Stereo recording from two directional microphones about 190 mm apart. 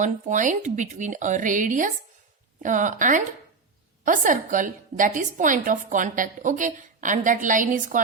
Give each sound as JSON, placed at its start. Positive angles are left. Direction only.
{"t": 0.0, "sound": "a woman's voice", "side_deg": -40}